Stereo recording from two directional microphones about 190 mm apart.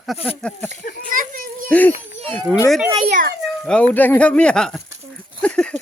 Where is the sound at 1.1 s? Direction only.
45° right (ahead or behind).